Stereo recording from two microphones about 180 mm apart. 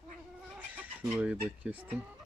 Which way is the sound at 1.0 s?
5° right (ahead or behind).